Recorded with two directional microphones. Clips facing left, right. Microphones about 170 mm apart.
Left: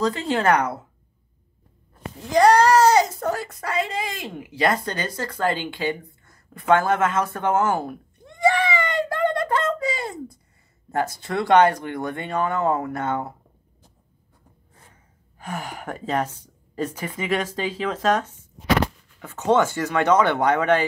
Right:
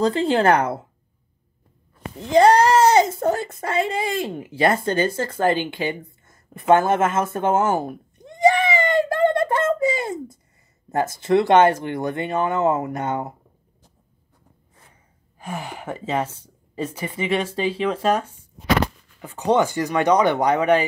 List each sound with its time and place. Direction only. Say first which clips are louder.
0.0 s speech: right 4 dB; 30° right (ahead or behind)
2.2 s speech: right 1 dB; 25° right (ahead or behind)
15.4 s speech: right 1 dB; 10° right (ahead or behind)